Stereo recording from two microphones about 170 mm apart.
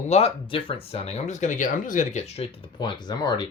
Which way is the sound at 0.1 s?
35° left (ahead or behind).